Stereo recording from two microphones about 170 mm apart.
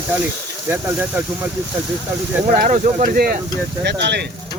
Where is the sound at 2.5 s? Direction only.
50° right (ahead or behind).